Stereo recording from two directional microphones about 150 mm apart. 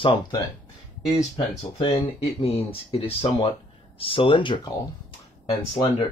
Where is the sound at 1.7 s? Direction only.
40° left (ahead or behind).